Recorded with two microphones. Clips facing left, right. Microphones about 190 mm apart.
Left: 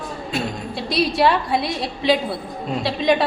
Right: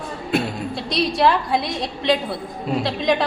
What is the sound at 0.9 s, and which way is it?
A woman's voice, 5° left (ahead or behind).